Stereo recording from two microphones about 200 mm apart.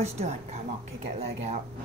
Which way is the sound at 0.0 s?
30° right (ahead or behind).